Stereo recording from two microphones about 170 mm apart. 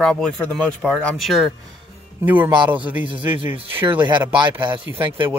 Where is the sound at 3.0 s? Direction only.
30° right (ahead or behind).